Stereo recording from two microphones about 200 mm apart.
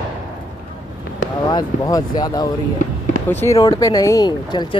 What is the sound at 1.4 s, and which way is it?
Speech, 20° left (ahead or behind).